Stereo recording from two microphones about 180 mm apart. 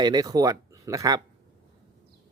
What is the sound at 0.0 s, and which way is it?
Speech, 20° right (ahead or behind).